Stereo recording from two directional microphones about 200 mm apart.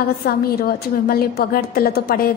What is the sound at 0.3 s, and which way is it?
A woman's voice, 50° left (ahead or behind).